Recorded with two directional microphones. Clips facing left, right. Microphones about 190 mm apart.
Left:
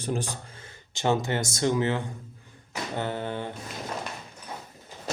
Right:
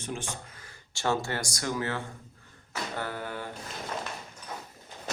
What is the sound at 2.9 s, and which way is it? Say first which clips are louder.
Mantra: left 6 dB; 25° left (ahead or behind).